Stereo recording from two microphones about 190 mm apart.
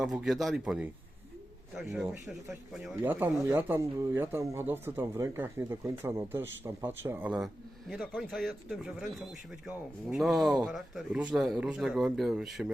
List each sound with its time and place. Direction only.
0.0 s speech: centre (ahead or behind)